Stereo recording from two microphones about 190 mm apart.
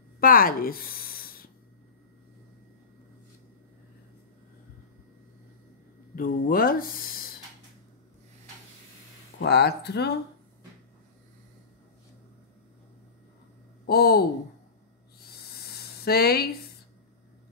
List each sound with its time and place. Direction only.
0.2 s a sound: 50° left (ahead or behind)
6.1 s speech: 50° left (ahead or behind)
9.4 s speech: 60° left (ahead or behind)
13.8 s speech: 55° left (ahead or behind)
16.0 s speech: 55° left (ahead or behind)